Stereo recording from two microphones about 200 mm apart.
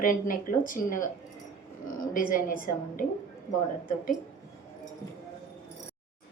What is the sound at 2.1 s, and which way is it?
Speech, 45° left (ahead or behind).